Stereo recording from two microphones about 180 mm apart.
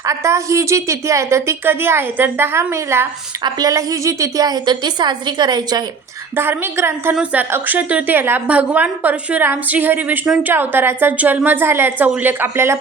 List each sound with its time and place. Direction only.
0.0 s a woman's voice: 15° right (ahead or behind)
6.3 s a woman's voice: 15° right (ahead or behind)